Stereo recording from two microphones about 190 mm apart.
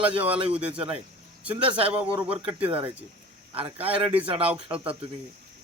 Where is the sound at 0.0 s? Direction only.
10° right (ahead or behind).